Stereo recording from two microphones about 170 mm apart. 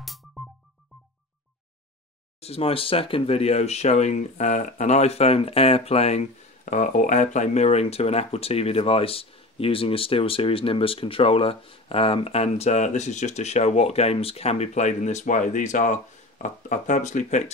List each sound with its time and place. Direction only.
0.0 s music: centre (ahead or behind)
2.4 s speech: 35° left (ahead or behind)